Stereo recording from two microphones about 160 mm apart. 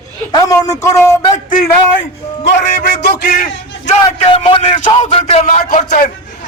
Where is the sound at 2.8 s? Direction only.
80° left.